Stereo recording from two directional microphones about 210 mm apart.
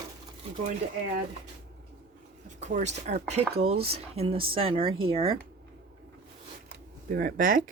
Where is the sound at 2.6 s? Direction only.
35° right (ahead or behind).